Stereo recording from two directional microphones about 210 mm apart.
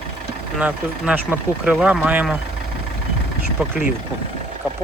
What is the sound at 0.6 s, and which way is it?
Speech, 5° right (ahead or behind).